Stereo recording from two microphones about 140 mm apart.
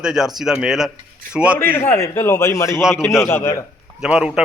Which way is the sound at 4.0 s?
5° right (ahead or behind).